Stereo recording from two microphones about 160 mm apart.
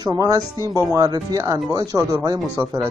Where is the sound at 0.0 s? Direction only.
20° right (ahead or behind).